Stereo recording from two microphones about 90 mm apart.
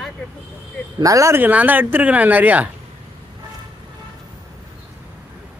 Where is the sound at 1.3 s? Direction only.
20° right (ahead or behind).